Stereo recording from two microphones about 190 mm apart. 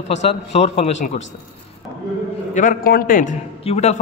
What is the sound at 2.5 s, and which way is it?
A man's voice, 45° left (ahead or behind).